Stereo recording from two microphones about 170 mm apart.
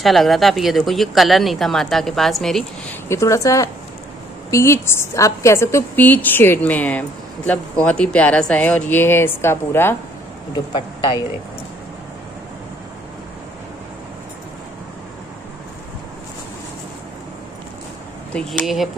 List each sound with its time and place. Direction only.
0.0 s speech: centre (ahead or behind)
3.1 s a woman's voice: 15° left (ahead or behind)
10.5 s speech: 25° left (ahead or behind)
18.3 s speech: 5° left (ahead or behind)